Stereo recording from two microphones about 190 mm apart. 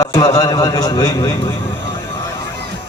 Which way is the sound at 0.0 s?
20° left (ahead or behind).